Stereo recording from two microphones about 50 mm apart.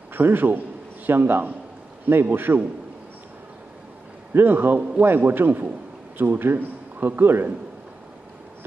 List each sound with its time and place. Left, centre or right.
0.1 s a man's voice: right
4.3 s a man's voice: right
5.0 s a man's voice: right